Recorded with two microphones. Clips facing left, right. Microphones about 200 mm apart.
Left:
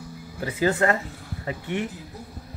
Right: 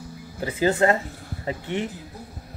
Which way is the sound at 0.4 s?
25° right (ahead or behind).